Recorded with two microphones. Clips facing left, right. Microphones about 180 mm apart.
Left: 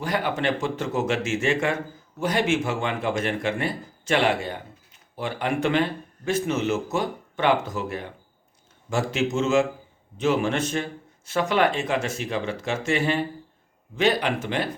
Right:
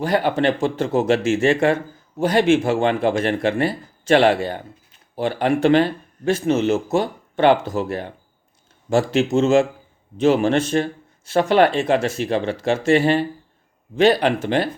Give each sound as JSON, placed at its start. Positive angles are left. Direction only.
{"t": 0.0, "sound": "speech", "side_deg": -30}